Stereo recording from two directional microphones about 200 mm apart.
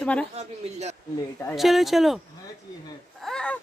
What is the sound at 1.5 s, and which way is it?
Speech, centre (ahead or behind).